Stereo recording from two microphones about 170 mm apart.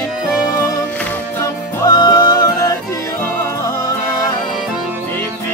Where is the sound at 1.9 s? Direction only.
20° left (ahead or behind).